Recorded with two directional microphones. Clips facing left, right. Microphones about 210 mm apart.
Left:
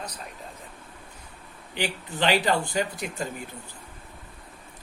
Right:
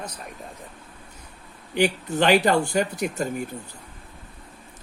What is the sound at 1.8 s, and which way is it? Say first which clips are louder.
Speech: right 7 dB; 45° right (ahead or behind).